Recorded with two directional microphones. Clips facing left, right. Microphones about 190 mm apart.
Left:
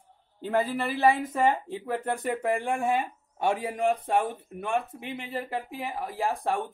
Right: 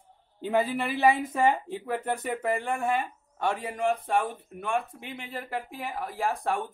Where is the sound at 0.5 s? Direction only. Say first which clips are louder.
Even; 10° right (ahead or behind).